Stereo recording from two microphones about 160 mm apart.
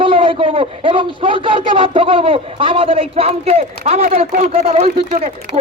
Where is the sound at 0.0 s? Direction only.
35° right (ahead or behind).